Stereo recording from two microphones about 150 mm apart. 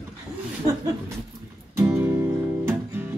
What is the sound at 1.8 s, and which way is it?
Music, 15° right (ahead or behind).